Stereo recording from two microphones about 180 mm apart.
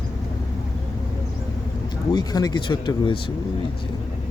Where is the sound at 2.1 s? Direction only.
20° left (ahead or behind).